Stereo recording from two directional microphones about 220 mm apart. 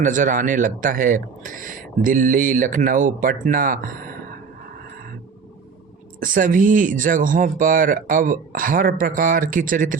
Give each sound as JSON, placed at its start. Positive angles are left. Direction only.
{"t": 0.0, "sound": "speech", "side_deg": -35}
{"t": 6.1, "sound": "speech", "side_deg": -40}